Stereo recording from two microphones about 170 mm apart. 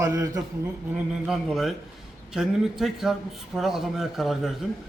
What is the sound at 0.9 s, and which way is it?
A man's voice, centre (ahead or behind).